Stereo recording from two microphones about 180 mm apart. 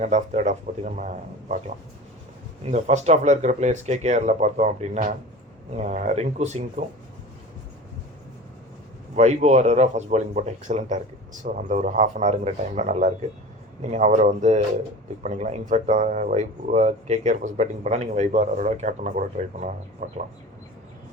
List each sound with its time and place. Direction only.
0.0 s a man's voice: 40° right (ahead or behind)
2.6 s a man's voice: 40° right (ahead or behind)
9.1 s speech: 40° right (ahead or behind)